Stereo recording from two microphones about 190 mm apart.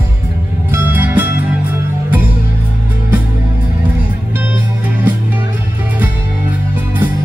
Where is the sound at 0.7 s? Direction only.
10° right (ahead or behind).